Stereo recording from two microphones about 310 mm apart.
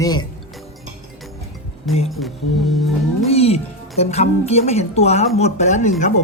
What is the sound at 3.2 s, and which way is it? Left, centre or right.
A woman's voice, centre.